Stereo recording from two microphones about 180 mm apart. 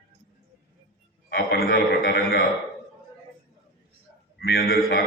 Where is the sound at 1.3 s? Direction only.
60° left (ahead or behind).